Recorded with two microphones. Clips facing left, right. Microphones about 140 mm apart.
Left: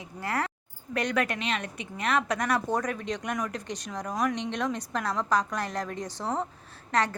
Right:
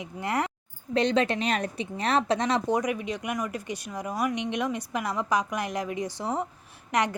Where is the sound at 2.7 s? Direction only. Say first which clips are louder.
Right 2 dB; 15° right (ahead or behind).